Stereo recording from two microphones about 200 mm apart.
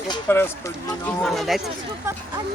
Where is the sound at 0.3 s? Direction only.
15° left (ahead or behind).